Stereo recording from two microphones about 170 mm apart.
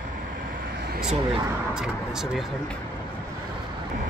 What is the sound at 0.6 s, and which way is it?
Vehicle, 70° right (ahead or behind).